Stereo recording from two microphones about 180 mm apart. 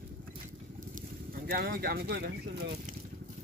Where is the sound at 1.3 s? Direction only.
55° right (ahead or behind).